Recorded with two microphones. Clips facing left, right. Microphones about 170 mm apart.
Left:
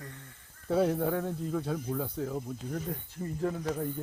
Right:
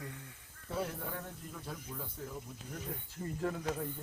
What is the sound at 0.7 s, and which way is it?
Speech, 65° left (ahead or behind).